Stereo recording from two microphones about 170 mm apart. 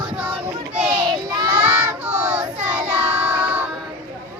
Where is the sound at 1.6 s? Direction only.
10° right (ahead or behind).